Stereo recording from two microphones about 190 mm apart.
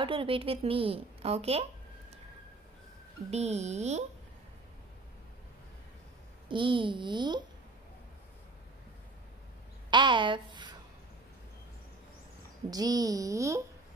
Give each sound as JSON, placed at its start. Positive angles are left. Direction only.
{"t": 0.0, "sound": "a woman's voice", "side_deg": -25}
{"t": 3.3, "sound": "speech", "side_deg": -35}
{"t": 6.5, "sound": "a woman's voice", "side_deg": -25}
{"t": 9.8, "sound": "a woman's voice", "side_deg": -25}
{"t": 12.6, "sound": "a woman's voice", "side_deg": -20}